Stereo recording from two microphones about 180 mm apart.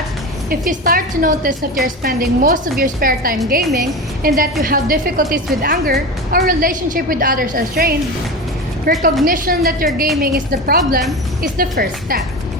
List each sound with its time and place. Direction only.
0.5 s a woman's voice: 50° right (ahead or behind)